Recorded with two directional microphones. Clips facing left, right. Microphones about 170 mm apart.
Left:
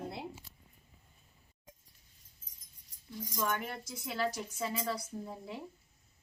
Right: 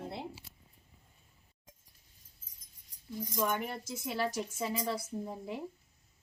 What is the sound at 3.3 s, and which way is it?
Speech, 15° right (ahead or behind).